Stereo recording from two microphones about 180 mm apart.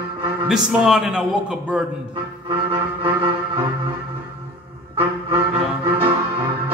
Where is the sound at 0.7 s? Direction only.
5° right (ahead or behind).